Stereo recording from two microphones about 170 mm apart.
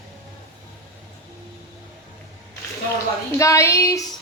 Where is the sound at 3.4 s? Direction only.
20° left (ahead or behind).